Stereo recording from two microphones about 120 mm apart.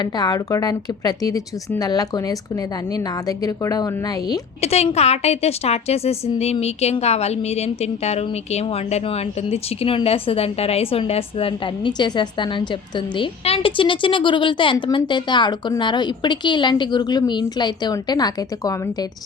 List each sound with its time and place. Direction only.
0.0 s a woman's voice: 35° left (ahead or behind)
4.6 s a woman's voice: 60° left (ahead or behind); by 19.0 s 30° left (ahead or behind)